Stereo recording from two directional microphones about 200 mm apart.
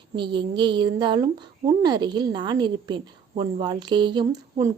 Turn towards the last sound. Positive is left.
turn(degrees=-20)  # may be behind; listen again after turning